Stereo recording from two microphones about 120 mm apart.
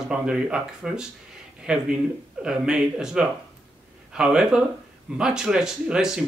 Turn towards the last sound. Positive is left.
turn(degrees=-5)  # may be behind; listen again after turning